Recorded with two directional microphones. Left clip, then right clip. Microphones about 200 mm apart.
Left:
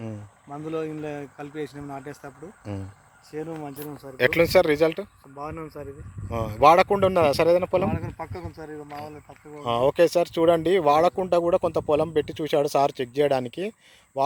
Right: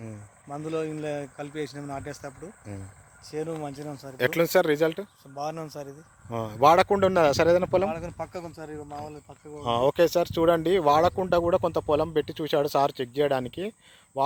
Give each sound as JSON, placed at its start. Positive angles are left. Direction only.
{"t": 0.5, "sound": "speech", "side_deg": -15}
{"t": 3.3, "sound": "speech", "side_deg": -35}
{"t": 4.2, "sound": "speech", "side_deg": 5}
{"t": 5.4, "sound": "speech", "side_deg": -75}
{"t": 6.3, "sound": "speech", "side_deg": 0}
{"t": 8.5, "sound": "speech", "side_deg": 0}
{"t": 8.9, "sound": "speech", "side_deg": 15}
{"t": 9.6, "sound": "speech", "side_deg": 0}